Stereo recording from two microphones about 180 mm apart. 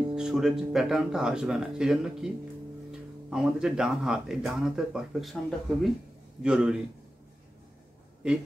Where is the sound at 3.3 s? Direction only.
5° right (ahead or behind).